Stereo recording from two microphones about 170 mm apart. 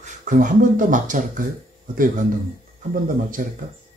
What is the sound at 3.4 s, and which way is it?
Speech, 50° right (ahead or behind).